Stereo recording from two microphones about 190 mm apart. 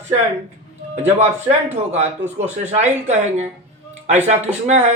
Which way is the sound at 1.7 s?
35° right (ahead or behind).